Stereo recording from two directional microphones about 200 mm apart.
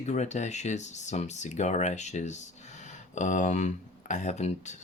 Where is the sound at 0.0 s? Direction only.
35° left (ahead or behind).